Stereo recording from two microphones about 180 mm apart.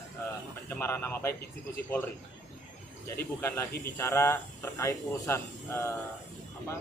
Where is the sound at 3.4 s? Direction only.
15° left (ahead or behind).